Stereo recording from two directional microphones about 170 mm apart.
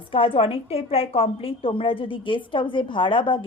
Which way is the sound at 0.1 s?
35° left (ahead or behind).